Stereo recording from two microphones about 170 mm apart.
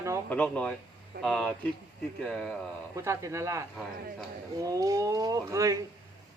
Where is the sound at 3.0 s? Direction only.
15° right (ahead or behind).